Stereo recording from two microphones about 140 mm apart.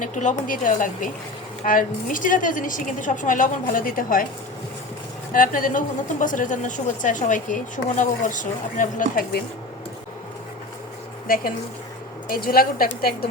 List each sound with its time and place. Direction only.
0.0 s a woman's voice: 65° left (ahead or behind)
5.3 s a woman's voice: 85° left
12.3 s a woman's voice: 90° left